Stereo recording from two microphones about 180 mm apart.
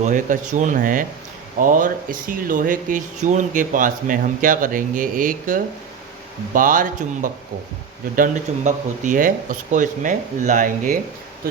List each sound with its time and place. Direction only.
0.0 s speech: 45° right (ahead or behind)